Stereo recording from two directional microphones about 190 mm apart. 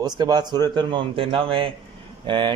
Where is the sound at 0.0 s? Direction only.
20° right (ahead or behind).